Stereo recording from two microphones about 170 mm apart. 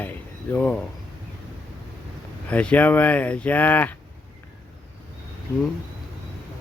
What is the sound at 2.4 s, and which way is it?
Speech, 10° left (ahead or behind).